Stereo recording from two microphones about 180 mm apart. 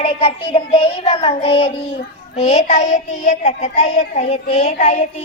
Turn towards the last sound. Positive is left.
turn(degrees=40)  # may be behind; listen again after turning